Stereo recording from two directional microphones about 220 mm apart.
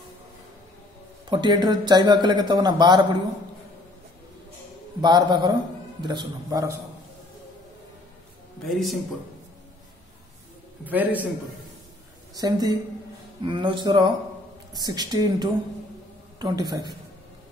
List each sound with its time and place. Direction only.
1.3 s a man's voice: 20° right (ahead or behind)
5.0 s a man's voice: 20° right (ahead or behind)
8.6 s a man's voice: centre (ahead or behind)
10.9 s speech: 5° right (ahead or behind)
12.4 s a man's voice: 15° right (ahead or behind)